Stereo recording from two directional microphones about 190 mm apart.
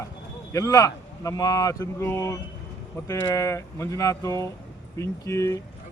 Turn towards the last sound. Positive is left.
turn(degrees=15)  # may be behind; listen again after turning